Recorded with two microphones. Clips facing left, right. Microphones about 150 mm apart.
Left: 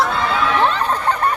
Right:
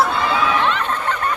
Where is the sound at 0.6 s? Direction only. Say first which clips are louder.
Left 3 dB; 35° left (ahead or behind).